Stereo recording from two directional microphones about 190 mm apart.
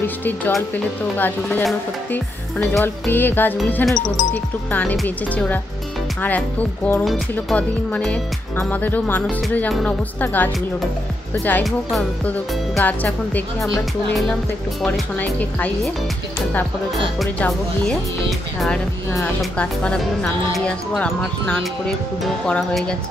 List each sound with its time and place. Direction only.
0.0 s speech: 10° left (ahead or behind)
2.8 s speech: 10° left (ahead or behind)
14.8 s speech: 10° left (ahead or behind)
17.2 s speech: 5° left (ahead or behind)